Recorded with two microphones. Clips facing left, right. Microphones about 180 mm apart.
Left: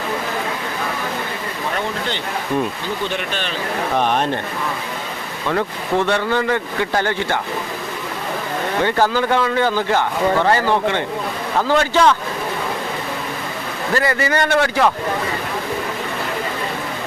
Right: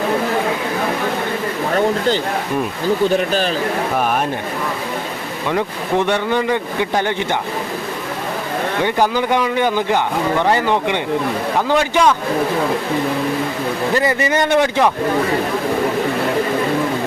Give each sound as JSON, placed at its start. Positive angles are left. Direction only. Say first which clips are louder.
{"t": 1.7, "sound": "speech", "louder": "right 10 dB", "side_deg": -40}
{"t": 5.5, "sound": "speech", "louder": "right 1 dB", "side_deg": -15}
{"t": 8.8, "sound": "speech", "louder": "even", "side_deg": -15}
{"t": 13.9, "sound": "a man's voice", "louder": "even", "side_deg": -20}